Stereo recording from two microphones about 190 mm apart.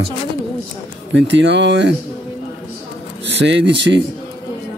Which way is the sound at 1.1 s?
70° right (ahead or behind).